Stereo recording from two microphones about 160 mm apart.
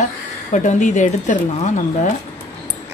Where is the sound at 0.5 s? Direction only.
50° left (ahead or behind).